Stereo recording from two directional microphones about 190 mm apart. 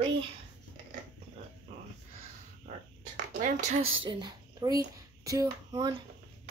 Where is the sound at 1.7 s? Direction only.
35° right (ahead or behind).